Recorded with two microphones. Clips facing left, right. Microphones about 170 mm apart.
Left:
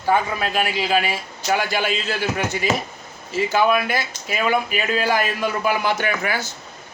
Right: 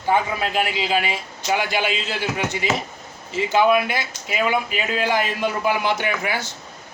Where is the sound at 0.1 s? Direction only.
20° right (ahead or behind).